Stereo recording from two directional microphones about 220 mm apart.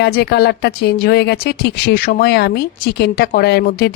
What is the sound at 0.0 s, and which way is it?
Speech, 50° left (ahead or behind).